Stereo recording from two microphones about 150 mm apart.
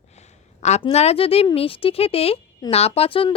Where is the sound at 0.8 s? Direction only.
45° left (ahead or behind).